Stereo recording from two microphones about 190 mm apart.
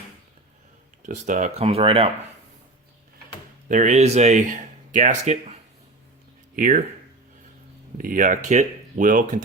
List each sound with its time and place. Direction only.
1.0 s speech: 40° right (ahead or behind)
3.7 s speech: 40° right (ahead or behind)
6.6 s speech: 45° right (ahead or behind)
7.9 s speech: 45° right (ahead or behind)